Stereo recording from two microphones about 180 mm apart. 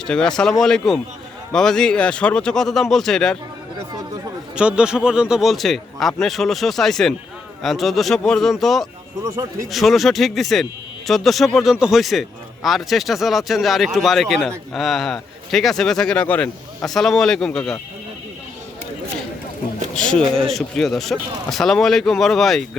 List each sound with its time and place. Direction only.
0.1 s speech: 5° left (ahead or behind)
4.5 s speech: 5° right (ahead or behind)
9.2 s speech: 20° right (ahead or behind)
9.7 s speech: centre (ahead or behind)
20.0 s speech: 5° left (ahead or behind)